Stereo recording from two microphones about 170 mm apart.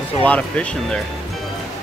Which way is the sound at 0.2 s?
10° left (ahead or behind).